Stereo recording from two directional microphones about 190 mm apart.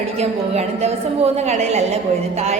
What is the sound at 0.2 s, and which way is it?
A woman's voice, 35° right (ahead or behind).